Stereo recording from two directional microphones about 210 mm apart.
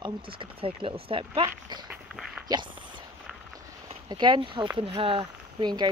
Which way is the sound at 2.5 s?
20° right (ahead or behind).